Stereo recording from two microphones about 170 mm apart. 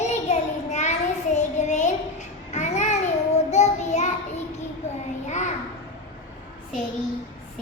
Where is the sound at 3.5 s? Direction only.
40° left (ahead or behind).